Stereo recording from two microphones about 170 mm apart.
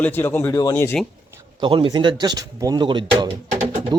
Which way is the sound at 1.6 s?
30° right (ahead or behind).